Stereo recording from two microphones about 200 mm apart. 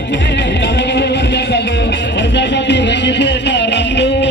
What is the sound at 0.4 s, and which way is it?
Music, 60° left (ahead or behind).